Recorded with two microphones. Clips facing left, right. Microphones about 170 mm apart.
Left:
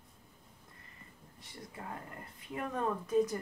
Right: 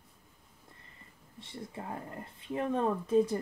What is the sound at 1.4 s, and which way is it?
Speech, 25° right (ahead or behind).